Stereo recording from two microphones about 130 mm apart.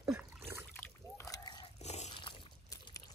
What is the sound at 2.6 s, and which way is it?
Pour, 25° left (ahead or behind).